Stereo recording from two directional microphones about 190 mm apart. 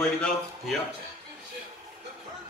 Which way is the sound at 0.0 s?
5° left (ahead or behind).